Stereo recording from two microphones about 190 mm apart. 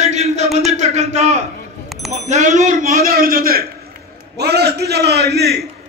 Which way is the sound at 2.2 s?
40° right (ahead or behind).